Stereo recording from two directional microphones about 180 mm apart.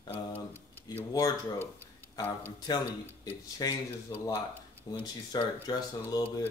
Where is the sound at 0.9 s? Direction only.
20° left (ahead or behind).